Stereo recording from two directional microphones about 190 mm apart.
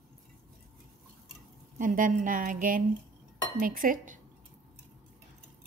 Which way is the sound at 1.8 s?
45° right (ahead or behind).